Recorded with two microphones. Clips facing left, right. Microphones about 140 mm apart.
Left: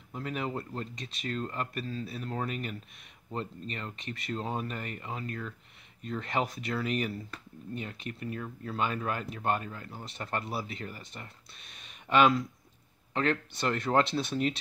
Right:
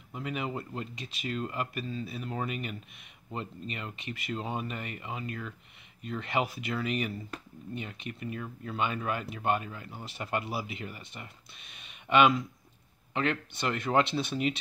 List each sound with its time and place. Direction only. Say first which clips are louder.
0.1 s speech: even; 5° right (ahead or behind)